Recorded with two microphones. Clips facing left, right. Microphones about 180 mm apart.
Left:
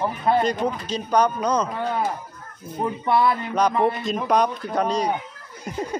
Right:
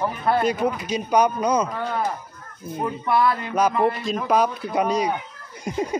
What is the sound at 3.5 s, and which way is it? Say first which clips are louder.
Speech: right 1 dB; 5° right (ahead or behind).